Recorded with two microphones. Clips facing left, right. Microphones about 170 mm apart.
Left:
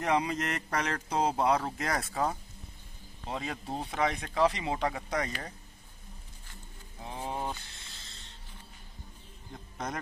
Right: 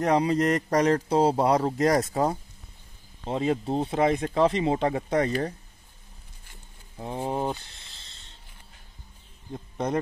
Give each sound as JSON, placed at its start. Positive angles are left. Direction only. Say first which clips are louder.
{"t": 0.0, "sound": "a man's voice", "louder": "right 7 dB", "side_deg": -35}
{"t": 7.0, "sound": "a sound", "louder": "right 7 dB", "side_deg": -35}
{"t": 9.5, "sound": "speech", "louder": "right 9 dB", "side_deg": -30}